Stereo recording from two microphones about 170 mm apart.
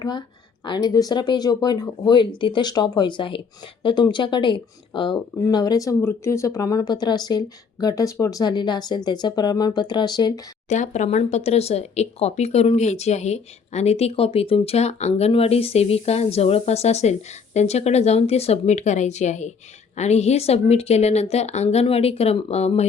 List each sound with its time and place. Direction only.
0.6 s speech: 25° left (ahead or behind)
10.7 s speech: 45° left (ahead or behind)